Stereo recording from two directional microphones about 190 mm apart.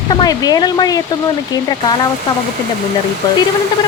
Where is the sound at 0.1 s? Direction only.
20° left (ahead or behind).